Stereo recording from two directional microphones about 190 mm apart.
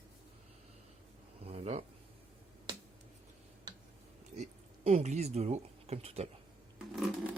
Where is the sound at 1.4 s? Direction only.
35° right (ahead or behind).